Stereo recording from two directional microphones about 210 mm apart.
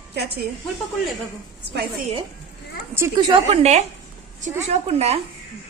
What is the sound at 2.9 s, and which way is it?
A woman's voice, 15° right (ahead or behind).